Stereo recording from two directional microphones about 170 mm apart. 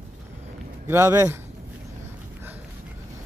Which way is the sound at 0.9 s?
15° right (ahead or behind).